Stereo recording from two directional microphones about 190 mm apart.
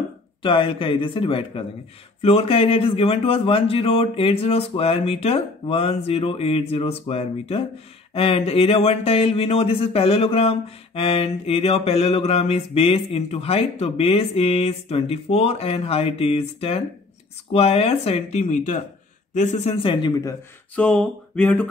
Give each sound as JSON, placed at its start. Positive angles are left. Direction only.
{"t": 0.4, "sound": "speech", "side_deg": 25}
{"t": 20.7, "sound": "speech", "side_deg": 5}